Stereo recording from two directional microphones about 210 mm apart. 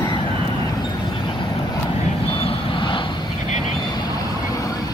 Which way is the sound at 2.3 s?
25° left (ahead or behind).